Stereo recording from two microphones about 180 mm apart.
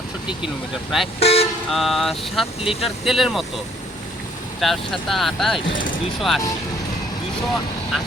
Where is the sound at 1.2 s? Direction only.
35° left (ahead or behind).